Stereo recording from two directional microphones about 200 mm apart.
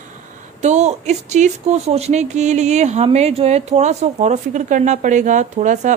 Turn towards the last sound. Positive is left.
turn(degrees=-40)  # may be behind; listen again after turning